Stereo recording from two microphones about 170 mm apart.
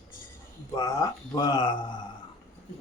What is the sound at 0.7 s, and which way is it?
Speech, 20° left (ahead or behind).